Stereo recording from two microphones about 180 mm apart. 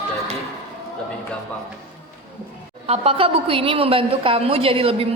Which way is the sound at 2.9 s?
35° right (ahead or behind).